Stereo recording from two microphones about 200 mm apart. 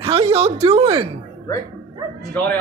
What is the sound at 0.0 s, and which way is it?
A woman's voice, 30° right (ahead or behind).